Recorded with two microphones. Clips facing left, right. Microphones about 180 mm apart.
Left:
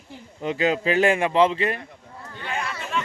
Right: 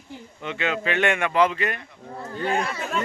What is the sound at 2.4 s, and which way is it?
Speech, 40° right (ahead or behind).